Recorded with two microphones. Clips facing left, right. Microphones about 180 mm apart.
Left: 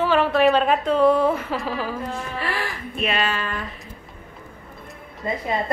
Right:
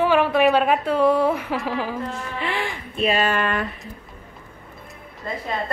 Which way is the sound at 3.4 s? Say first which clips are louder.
Right 6 dB; 65° right (ahead or behind).